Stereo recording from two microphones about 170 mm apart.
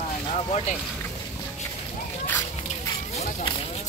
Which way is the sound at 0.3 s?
45° left (ahead or behind).